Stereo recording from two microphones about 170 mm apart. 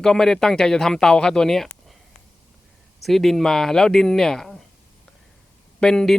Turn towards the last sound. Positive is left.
turn(degrees=5)  # may be behind; listen again after turning